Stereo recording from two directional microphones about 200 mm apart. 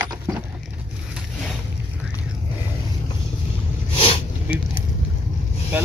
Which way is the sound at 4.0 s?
30° left (ahead or behind).